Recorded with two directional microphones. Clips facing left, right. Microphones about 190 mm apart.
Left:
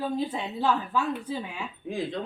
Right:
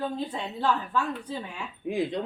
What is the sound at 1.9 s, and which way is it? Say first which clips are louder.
Speech: right 4 dB; 20° right (ahead or behind).